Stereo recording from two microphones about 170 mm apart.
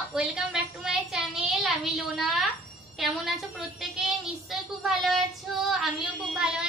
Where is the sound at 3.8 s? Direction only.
Centre (ahead or behind).